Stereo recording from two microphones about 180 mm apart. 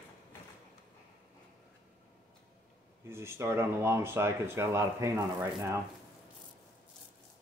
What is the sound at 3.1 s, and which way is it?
Speech, 15° right (ahead or behind).